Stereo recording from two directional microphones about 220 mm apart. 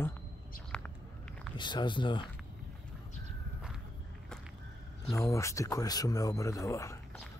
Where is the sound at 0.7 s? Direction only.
5° left (ahead or behind).